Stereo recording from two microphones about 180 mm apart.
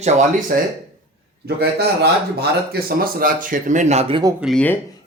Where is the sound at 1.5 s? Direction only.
65° right (ahead or behind); by 4.2 s 35° right (ahead or behind).